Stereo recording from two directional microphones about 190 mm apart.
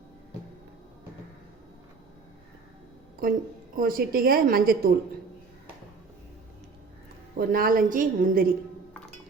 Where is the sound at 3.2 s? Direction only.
50° right (ahead or behind).